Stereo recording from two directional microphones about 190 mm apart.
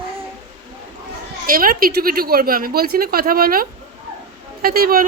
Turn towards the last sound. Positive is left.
turn(degrees=-50)  # may be behind; listen again after turning